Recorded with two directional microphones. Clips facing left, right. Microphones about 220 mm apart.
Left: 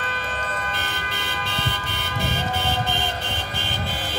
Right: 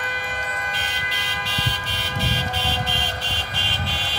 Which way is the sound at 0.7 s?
55° left (ahead or behind).